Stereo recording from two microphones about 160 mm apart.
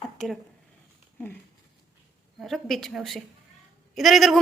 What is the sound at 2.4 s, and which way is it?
A woman's voice, centre (ahead or behind).